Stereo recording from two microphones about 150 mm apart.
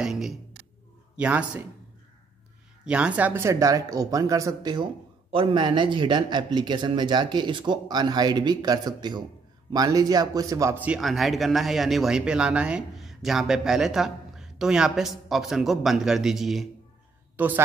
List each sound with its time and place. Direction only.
0.0 s a sound: 5° right (ahead or behind)
1.1 s speech: 10° right (ahead or behind)
2.8 s speech: 5° right (ahead or behind)
10.8 s speech: 5° right (ahead or behind)